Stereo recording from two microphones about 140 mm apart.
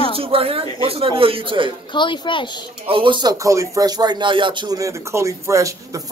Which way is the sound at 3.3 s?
20° right (ahead or behind).